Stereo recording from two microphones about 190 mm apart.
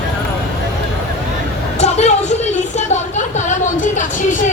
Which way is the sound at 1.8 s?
35° left (ahead or behind).